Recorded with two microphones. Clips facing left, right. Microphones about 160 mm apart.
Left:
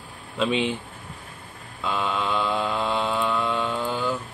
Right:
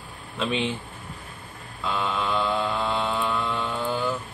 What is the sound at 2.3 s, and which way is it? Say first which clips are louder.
Mantra: even; 15° left (ahead or behind).